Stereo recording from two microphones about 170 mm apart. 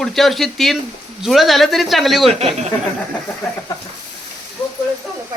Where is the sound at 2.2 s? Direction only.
35° right (ahead or behind).